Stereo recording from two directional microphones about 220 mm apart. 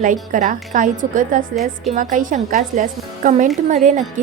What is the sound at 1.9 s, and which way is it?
A woman's voice, 35° right (ahead or behind).